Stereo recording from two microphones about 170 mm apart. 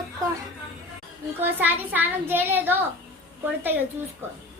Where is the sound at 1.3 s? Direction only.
10° right (ahead or behind).